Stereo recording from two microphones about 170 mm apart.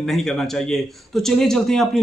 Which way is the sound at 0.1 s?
Centre (ahead or behind).